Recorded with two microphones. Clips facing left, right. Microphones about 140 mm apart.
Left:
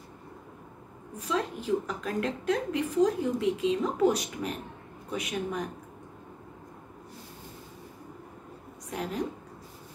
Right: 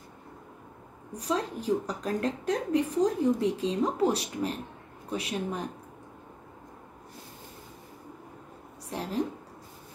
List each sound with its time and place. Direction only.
1.1 s a woman's voice: 40° right (ahead or behind)